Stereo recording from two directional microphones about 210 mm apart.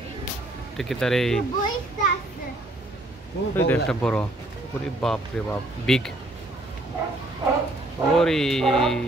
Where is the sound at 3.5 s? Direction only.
10° left (ahead or behind).